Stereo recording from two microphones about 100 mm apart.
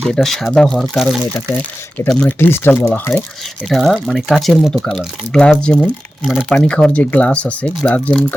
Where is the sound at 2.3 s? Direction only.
20° left (ahead or behind).